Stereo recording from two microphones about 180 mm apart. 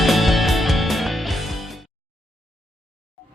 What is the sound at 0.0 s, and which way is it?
Music, centre (ahead or behind).